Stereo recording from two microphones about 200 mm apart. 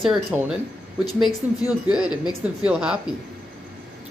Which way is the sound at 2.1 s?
20° left (ahead or behind).